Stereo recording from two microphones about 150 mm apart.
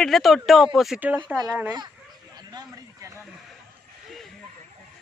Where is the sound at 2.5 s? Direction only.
25° right (ahead or behind).